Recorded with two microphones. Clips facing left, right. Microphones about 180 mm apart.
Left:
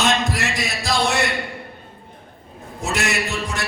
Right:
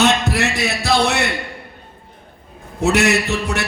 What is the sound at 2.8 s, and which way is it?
Speech, 65° right (ahead or behind).